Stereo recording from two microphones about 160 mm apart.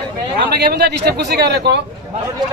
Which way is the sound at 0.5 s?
85° right.